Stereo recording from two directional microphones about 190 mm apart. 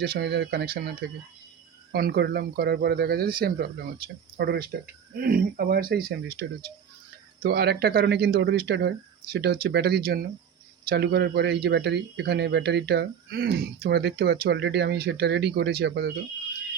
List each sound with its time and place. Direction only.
0.0 s speech: 60° right (ahead or behind)